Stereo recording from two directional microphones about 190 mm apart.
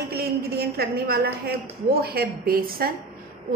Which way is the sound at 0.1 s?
55° right (ahead or behind).